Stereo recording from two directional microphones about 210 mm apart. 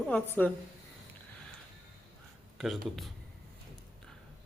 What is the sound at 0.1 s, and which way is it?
Speech, 5° left (ahead or behind).